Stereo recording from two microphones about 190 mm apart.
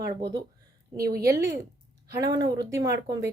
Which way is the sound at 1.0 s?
55° right (ahead or behind).